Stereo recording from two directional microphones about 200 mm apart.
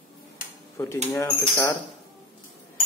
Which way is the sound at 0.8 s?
10° left (ahead or behind).